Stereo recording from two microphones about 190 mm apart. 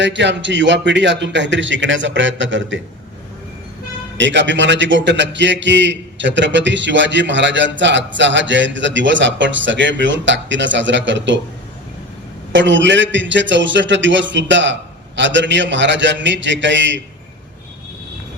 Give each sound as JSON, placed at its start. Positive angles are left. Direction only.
{"t": 0.0, "sound": "a man's voice", "side_deg": -70}
{"t": 4.2, "sound": "a man's voice", "side_deg": -70}
{"t": 12.5, "sound": "a man's voice", "side_deg": -70}